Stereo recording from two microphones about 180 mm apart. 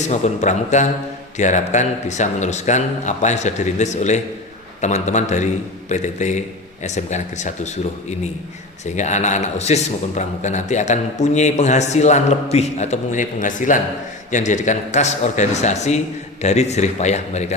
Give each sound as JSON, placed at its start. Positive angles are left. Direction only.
{"t": 0.1, "sound": "speech", "side_deg": 40}
{"t": 9.0, "sound": "speech", "side_deg": 40}